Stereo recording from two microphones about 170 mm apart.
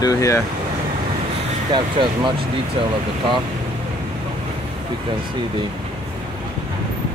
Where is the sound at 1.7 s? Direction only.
30° right (ahead or behind).